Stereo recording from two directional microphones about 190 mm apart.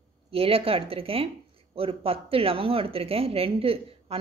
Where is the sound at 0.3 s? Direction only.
30° right (ahead or behind).